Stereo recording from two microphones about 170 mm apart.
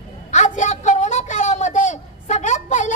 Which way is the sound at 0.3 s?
45° left (ahead or behind).